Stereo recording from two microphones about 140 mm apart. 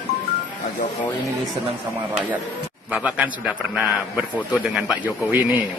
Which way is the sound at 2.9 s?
10° right (ahead or behind).